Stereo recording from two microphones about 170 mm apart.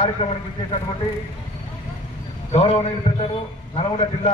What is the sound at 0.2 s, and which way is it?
Speech, 30° left (ahead or behind).